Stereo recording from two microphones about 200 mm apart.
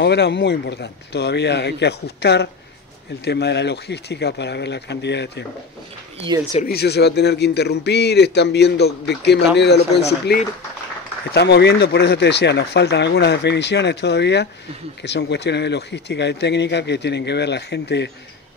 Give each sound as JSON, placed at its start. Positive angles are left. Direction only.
{"t": 0.0, "sound": "speech", "side_deg": 60}
{"t": 6.5, "sound": "speech", "side_deg": 50}